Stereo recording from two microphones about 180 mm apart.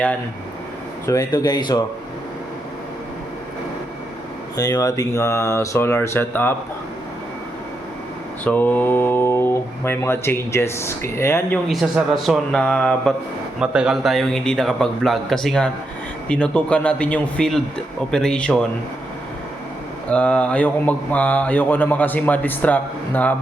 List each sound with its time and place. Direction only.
1.0 s speech: 20° left (ahead or behind)
4.5 s speech: 20° left (ahead or behind)
8.4 s speech: 10° left (ahead or behind)
11.7 s a man's voice: centre (ahead or behind)
20.1 s speech: 5° left (ahead or behind)